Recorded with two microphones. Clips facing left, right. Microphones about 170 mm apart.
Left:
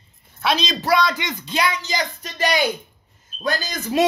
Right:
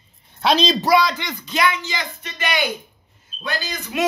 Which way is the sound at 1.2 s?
30° left (ahead or behind).